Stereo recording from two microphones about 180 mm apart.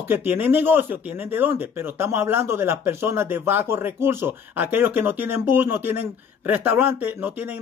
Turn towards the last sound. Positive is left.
turn(degrees=-10)  # may be behind; listen again after turning